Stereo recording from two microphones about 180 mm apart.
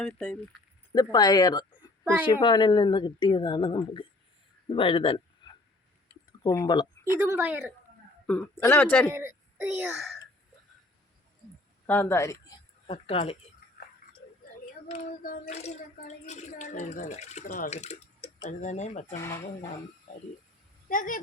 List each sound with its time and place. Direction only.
0.0 s speech: 5° left (ahead or behind)
0.9 s speech: 25° left (ahead or behind)
6.5 s speech: 20° left (ahead or behind)
7.1 s speech: 10° right (ahead or behind)
8.3 s speech: 10° left (ahead or behind)
9.0 s a child's voice: 10° right (ahead or behind)
11.9 s speech: 10° left (ahead or behind); by 13.3 s 30° left (ahead or behind)
15.4 s speech: 35° left (ahead or behind)
20.8 s speech: 50° left (ahead or behind)